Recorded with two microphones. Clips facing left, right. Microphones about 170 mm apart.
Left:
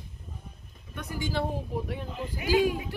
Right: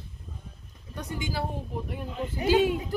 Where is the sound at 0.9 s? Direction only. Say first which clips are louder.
Left 1 dB; 25° right (ahead or behind).